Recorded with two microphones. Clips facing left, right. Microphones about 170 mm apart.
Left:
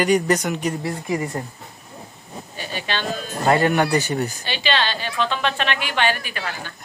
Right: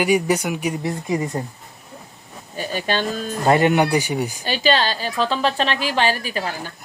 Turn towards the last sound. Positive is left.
turn(degrees=-35)  # may be behind; listen again after turning